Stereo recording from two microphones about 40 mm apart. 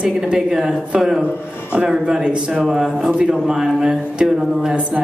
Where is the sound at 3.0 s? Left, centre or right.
Right.